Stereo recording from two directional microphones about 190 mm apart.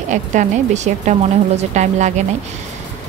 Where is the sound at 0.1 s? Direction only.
40° right (ahead or behind).